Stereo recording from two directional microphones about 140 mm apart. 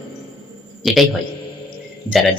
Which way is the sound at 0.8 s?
Centre (ahead or behind).